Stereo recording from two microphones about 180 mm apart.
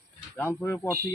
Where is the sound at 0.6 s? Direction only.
15° left (ahead or behind).